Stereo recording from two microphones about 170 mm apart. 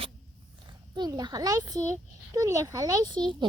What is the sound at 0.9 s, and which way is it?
Speech, 25° right (ahead or behind).